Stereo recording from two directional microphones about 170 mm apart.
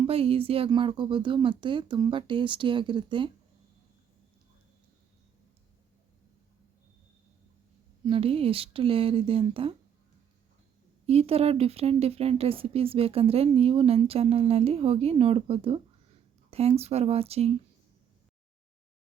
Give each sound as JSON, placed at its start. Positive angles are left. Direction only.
{"t": 0.0, "sound": "speech", "side_deg": -35}
{"t": 8.0, "sound": "speech", "side_deg": -35}
{"t": 11.0, "sound": "speech", "side_deg": -35}